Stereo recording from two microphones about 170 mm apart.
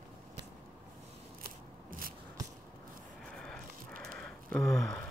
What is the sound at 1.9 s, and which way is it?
Biting, 55° right (ahead or behind).